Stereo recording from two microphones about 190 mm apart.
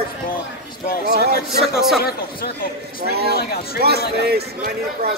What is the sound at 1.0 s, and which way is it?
Speech, 60° right (ahead or behind).